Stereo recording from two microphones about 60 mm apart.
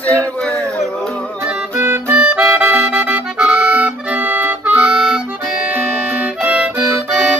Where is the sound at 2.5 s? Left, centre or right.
Right; by 3.9 s centre.